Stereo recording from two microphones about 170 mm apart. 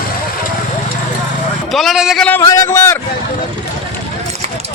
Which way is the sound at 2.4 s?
20° left (ahead or behind).